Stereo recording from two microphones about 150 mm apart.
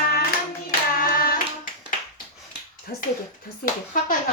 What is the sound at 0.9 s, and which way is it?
Hands, 70° left (ahead or behind).